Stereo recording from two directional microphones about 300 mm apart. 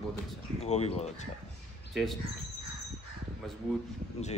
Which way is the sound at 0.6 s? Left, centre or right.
Left.